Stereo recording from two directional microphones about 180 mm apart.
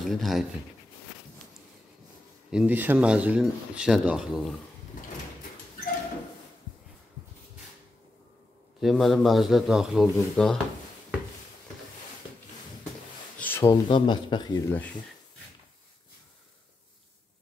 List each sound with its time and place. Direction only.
0.0 s speech: centre (ahead or behind)
2.5 s speech: 10° right (ahead or behind)
8.8 s speech: centre (ahead or behind)
13.4 s speech: 15° left (ahead or behind)
14.7 s speech: 10° left (ahead or behind)